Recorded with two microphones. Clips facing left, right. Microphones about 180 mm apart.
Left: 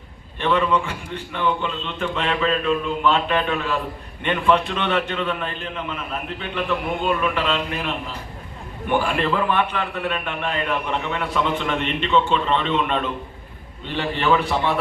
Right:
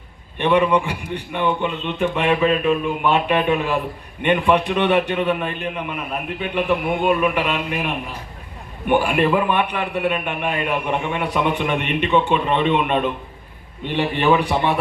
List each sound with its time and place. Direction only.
0.3 s a man's voice: 15° right (ahead or behind)